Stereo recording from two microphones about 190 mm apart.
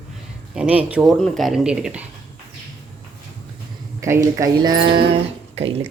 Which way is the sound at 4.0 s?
15° right (ahead or behind).